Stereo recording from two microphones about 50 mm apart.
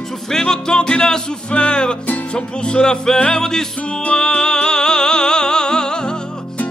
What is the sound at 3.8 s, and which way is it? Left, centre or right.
Music, left.